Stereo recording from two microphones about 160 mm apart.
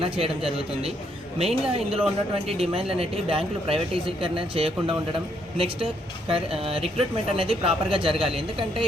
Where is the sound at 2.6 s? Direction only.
35° right (ahead or behind).